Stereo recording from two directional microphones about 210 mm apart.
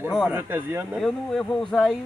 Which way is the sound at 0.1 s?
5° right (ahead or behind).